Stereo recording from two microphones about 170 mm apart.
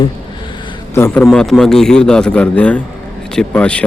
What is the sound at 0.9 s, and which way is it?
Speech, 15° left (ahead or behind).